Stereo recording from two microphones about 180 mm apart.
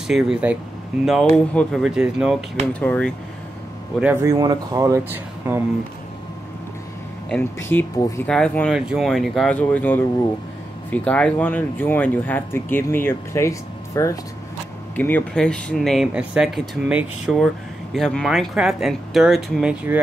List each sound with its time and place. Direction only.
0.0 s speech: 5° right (ahead or behind)
2.6 s speech: 10° left (ahead or behind)
4.0 s speech: 15° right (ahead or behind)
7.7 s speech: 5° left (ahead or behind)